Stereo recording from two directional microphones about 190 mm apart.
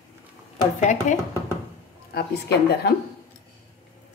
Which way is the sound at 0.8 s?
40° left (ahead or behind).